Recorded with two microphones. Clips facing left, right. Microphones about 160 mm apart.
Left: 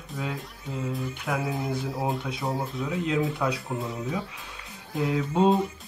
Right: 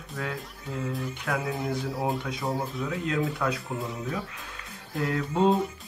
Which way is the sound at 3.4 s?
10° left (ahead or behind).